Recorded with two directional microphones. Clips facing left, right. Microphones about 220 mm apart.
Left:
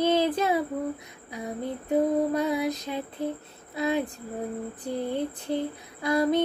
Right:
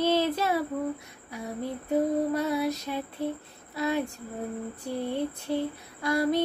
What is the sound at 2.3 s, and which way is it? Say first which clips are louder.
Female singing: left 1 dB; 15° left (ahead or behind).